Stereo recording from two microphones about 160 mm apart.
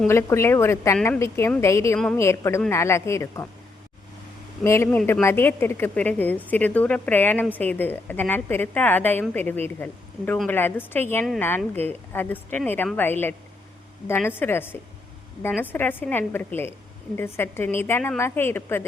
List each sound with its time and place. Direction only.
0.1 s a woman's voice: 15° left (ahead or behind)
4.6 s a woman's voice: 15° left (ahead or behind)